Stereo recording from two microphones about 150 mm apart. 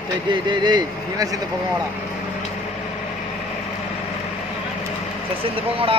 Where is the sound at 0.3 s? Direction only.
30° right (ahead or behind).